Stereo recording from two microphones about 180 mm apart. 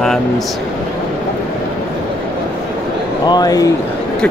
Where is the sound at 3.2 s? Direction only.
20° left (ahead or behind).